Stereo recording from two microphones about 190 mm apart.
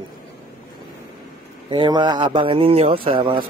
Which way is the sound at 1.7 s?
25° right (ahead or behind).